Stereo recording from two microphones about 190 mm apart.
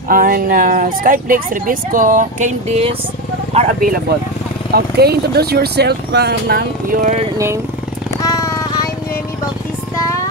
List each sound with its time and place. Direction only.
0.1 s speech: 50° right (ahead or behind)
4.7 s speech: 55° right (ahead or behind); by 7.2 s 40° right (ahead or behind)
7.3 s speech: 15° right (ahead or behind)
8.2 s vehicle: 20° left (ahead or behind)